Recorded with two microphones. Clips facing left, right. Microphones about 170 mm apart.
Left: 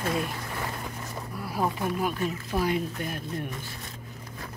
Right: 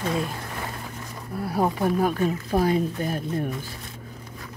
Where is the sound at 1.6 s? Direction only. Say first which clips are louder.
Right 5 dB; 40° right (ahead or behind).